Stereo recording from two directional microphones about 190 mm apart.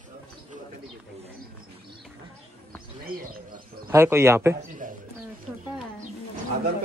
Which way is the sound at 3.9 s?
15° right (ahead or behind).